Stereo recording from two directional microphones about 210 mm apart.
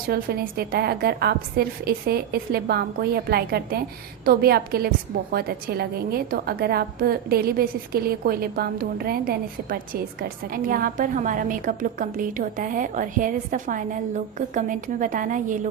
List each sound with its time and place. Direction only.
0.1 s a woman's voice: 45° right (ahead or behind)